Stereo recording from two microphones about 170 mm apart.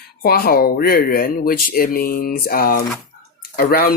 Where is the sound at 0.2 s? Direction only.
60° left (ahead or behind).